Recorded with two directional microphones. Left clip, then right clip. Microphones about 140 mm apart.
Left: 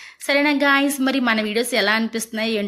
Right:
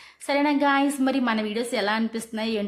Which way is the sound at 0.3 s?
10° left (ahead or behind).